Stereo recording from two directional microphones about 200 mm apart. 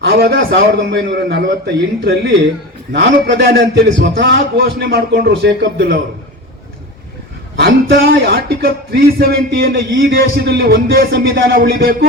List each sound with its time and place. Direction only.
0.0 s a man's voice: 55° right (ahead or behind)
4.5 s speech: 50° right (ahead or behind)
7.7 s speech: 50° right (ahead or behind)